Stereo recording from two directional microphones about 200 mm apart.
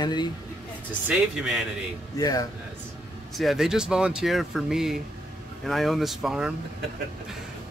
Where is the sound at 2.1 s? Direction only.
20° left (ahead or behind).